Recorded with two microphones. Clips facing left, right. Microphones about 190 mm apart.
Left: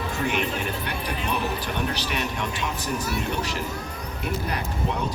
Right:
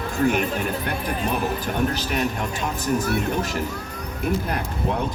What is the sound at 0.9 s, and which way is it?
Speech, 50° right (ahead or behind).